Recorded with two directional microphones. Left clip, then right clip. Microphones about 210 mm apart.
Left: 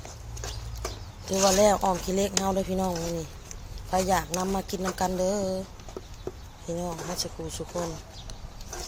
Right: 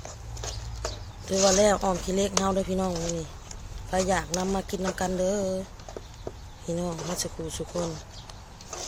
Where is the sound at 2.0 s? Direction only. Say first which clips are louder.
Right 1 dB; centre (ahead or behind).